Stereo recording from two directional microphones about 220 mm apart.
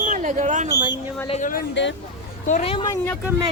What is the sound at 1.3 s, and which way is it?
Speech, 35° left (ahead or behind).